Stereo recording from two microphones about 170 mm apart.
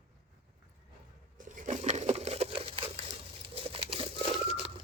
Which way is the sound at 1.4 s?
50° right (ahead or behind).